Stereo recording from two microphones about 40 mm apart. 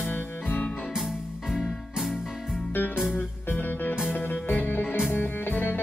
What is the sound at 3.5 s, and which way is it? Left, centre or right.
Music, left.